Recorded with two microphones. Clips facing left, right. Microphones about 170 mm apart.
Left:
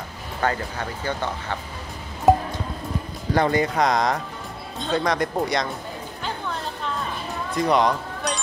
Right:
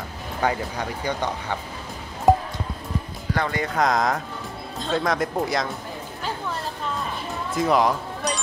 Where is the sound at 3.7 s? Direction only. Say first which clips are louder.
Left 1 dB; centre (ahead or behind).